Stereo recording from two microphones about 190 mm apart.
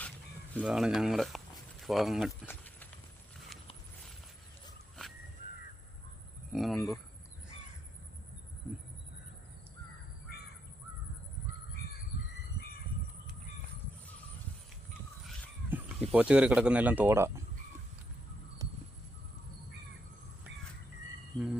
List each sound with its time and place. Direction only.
0.6 s speech: 5° right (ahead or behind)
6.5 s speech: centre (ahead or behind)
15.7 s speech: 5° right (ahead or behind)
18.6 s a sound: 20° right (ahead or behind)